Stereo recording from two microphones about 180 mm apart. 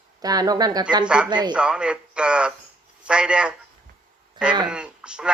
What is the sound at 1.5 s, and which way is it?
A man's voice, 5° right (ahead or behind).